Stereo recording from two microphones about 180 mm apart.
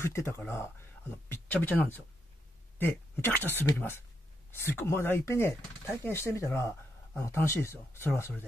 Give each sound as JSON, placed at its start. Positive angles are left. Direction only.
{"t": 0.0, "sound": "speech", "side_deg": 15}